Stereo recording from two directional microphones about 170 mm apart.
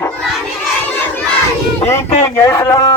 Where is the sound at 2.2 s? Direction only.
15° left (ahead or behind).